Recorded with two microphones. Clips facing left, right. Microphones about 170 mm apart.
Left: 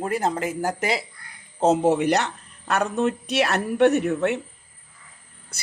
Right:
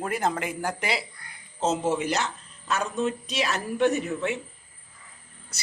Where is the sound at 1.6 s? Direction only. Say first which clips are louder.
Left 6 dB; 60° left (ahead or behind).